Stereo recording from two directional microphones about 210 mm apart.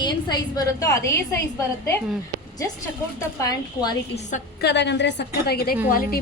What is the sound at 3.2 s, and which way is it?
Speech, 15° left (ahead or behind).